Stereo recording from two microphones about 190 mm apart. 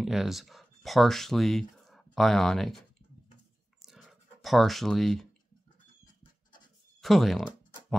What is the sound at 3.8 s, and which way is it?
Clicking, centre (ahead or behind).